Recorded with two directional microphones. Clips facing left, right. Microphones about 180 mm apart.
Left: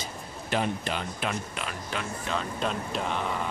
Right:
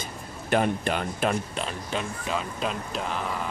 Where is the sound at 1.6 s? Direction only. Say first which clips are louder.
Right 4 dB; 30° right (ahead or behind).